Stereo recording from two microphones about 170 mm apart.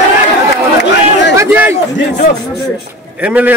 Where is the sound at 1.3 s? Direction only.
15° right (ahead or behind).